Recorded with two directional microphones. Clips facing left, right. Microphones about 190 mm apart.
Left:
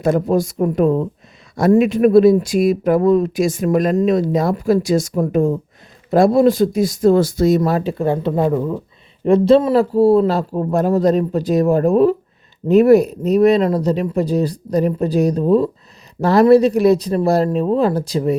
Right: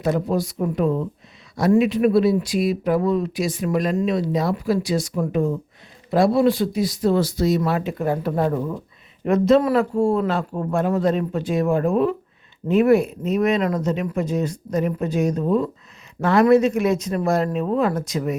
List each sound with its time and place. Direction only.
0.0 s speech: 50° left (ahead or behind); by 8.3 s 25° left (ahead or behind)
8.4 s speech: 10° left (ahead or behind)
9.2 s speech: 30° left (ahead or behind)